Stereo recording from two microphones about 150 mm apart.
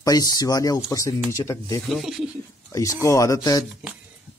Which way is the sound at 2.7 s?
20° left (ahead or behind).